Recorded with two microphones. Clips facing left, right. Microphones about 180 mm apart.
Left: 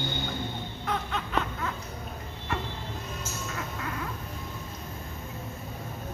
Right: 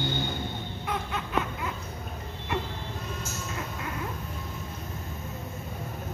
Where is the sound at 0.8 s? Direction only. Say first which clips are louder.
Left 1 dB; 5° right (ahead or behind).